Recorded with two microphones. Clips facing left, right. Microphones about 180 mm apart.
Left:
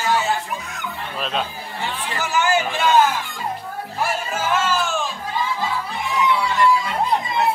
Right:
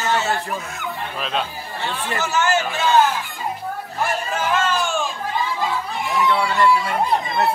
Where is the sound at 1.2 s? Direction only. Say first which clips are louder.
Left 1 dB; centre (ahead or behind).